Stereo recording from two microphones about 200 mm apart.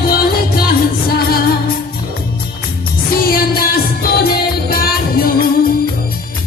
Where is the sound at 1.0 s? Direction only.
50° left (ahead or behind).